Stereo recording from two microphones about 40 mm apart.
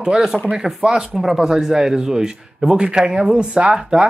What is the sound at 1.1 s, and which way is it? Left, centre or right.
Speech, centre.